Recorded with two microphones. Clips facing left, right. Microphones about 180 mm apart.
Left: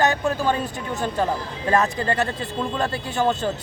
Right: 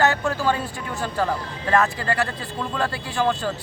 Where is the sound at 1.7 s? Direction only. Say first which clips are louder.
Even; 20° left (ahead or behind).